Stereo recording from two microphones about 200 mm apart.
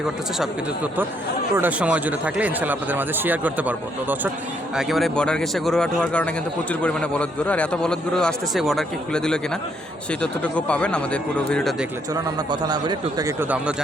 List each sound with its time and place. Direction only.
1.5 s a man's voice: 10° right (ahead or behind)
12.1 s speech: 20° right (ahead or behind)